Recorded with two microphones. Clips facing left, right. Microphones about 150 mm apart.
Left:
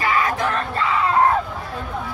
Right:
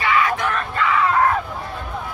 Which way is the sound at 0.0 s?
35° left (ahead or behind).